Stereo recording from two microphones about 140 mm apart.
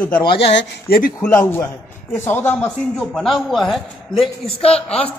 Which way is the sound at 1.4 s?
20° left (ahead or behind).